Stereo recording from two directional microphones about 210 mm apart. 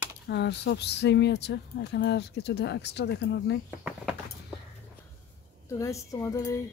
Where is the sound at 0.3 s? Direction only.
55° left (ahead or behind).